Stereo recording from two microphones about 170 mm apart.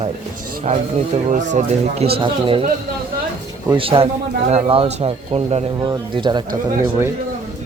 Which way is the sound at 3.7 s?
30° right (ahead or behind).